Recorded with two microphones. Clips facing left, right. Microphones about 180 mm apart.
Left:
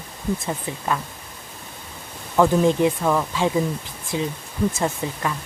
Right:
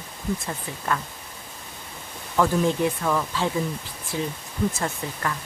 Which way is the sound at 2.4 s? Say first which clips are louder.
Left 4 dB; 20° left (ahead or behind).